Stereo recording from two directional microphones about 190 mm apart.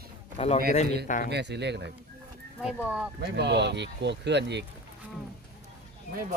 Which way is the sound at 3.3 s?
65° right (ahead or behind).